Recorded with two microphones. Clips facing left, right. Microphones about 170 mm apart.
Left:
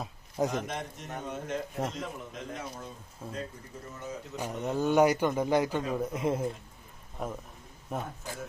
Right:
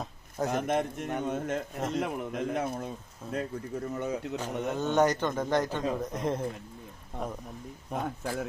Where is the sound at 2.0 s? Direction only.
65° right (ahead or behind).